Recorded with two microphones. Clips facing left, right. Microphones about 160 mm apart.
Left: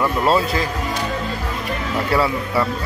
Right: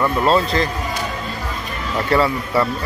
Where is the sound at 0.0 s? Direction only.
5° left (ahead or behind).